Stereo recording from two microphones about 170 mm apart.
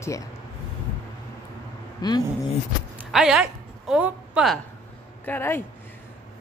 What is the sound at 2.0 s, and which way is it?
Speech, 25° left (ahead or behind).